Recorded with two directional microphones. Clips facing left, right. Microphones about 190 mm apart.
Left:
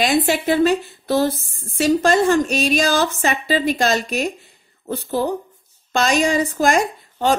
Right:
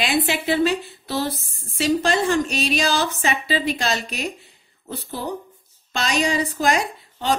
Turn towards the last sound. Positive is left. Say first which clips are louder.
# left 4 dB
turn(degrees=50)  # may be behind; listen again after turning